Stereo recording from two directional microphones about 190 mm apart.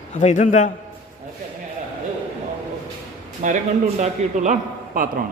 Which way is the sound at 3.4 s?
40° right (ahead or behind).